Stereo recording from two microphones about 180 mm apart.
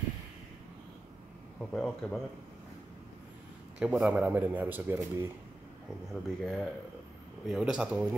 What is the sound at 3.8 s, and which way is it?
Speech, 5° right (ahead or behind).